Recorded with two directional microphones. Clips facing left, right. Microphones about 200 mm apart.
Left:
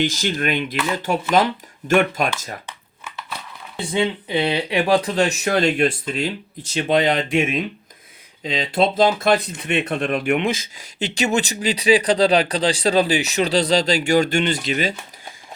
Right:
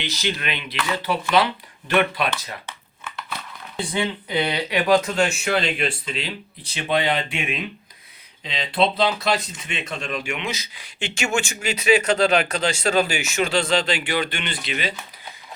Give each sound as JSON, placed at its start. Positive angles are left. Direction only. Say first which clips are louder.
{"t": 0.0, "sound": "speech", "louder": "left 6 dB", "side_deg": 50}
{"t": 2.6, "sound": "a sound", "louder": "even", "side_deg": 5}
{"t": 3.8, "sound": "speech", "louder": "left 4 dB", "side_deg": 25}